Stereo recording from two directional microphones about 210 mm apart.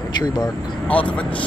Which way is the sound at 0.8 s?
5° left (ahead or behind).